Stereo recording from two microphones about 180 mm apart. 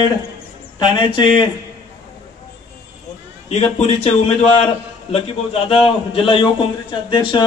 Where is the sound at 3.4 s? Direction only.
35° left (ahead or behind).